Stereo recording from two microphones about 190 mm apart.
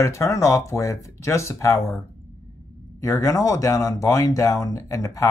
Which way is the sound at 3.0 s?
15° left (ahead or behind).